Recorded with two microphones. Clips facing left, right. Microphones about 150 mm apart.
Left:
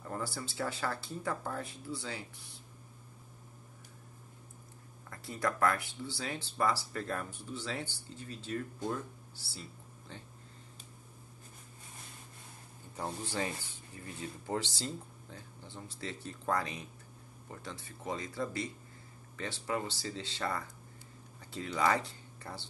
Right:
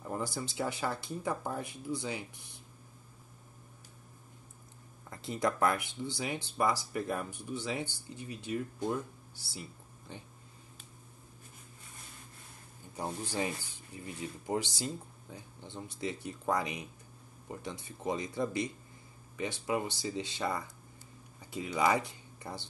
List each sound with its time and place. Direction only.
0.0 s speech: 15° right (ahead or behind)
5.1 s speech: 20° right (ahead or behind)
12.9 s speech: 15° right (ahead or behind)